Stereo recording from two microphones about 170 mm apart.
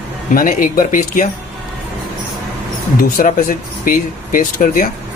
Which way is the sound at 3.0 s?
55° left (ahead or behind).